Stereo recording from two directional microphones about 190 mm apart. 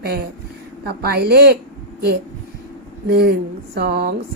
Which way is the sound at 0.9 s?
55° right (ahead or behind).